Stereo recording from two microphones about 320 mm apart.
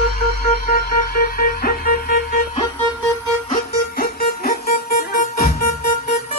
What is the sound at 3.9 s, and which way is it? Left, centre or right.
Music, left.